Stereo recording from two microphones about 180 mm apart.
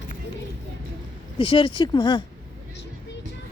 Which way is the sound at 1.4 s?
30° left (ahead or behind).